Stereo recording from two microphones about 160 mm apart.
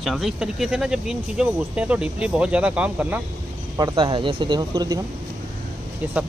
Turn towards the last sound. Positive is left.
turn(degrees=-10)  # may be behind; listen again after turning